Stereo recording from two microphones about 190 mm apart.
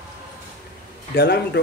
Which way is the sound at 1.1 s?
60° left (ahead or behind).